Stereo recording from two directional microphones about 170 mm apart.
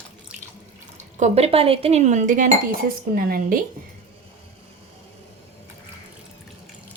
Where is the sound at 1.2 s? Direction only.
35° right (ahead or behind).